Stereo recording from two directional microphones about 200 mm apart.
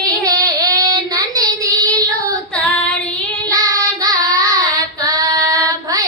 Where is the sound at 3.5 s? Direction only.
15° right (ahead or behind).